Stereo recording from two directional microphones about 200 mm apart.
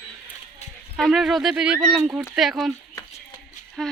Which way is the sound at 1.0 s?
Centre (ahead or behind).